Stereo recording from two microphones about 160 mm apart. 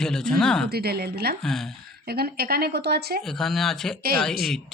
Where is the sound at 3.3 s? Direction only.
Centre (ahead or behind).